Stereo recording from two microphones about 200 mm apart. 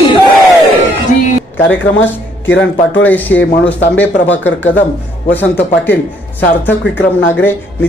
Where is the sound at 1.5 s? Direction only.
65° left (ahead or behind).